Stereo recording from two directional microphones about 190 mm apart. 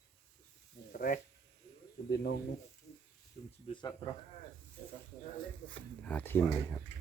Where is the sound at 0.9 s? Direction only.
45° left (ahead or behind).